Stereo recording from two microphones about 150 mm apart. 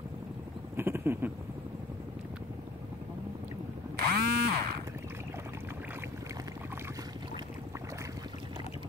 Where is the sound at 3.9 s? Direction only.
90° right.